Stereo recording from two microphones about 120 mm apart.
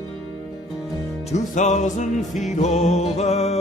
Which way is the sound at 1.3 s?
75° left (ahead or behind).